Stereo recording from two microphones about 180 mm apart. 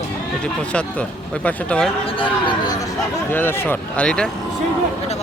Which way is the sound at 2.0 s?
30° left (ahead or behind).